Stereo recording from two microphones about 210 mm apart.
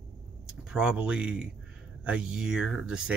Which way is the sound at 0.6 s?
5° right (ahead or behind).